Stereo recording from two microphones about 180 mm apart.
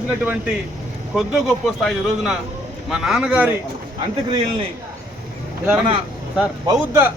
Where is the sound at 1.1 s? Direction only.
Centre (ahead or behind).